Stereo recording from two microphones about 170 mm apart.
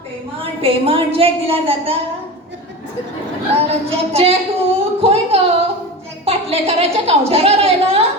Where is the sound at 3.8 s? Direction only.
35° right (ahead or behind).